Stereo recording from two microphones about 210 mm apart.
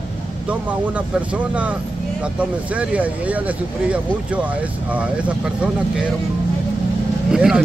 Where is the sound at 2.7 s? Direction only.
5° right (ahead or behind).